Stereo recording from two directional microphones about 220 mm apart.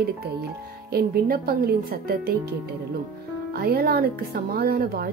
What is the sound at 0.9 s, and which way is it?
A woman's voice, 45° right (ahead or behind).